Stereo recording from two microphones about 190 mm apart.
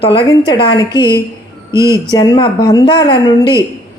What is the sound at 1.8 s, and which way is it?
A woman's voice, 20° left (ahead or behind).